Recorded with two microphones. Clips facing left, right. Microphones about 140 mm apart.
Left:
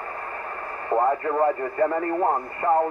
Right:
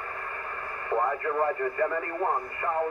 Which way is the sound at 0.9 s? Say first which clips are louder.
Left 5 dB; 30° left (ahead or behind).